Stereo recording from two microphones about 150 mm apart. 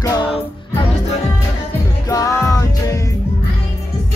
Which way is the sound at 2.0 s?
20° left (ahead or behind).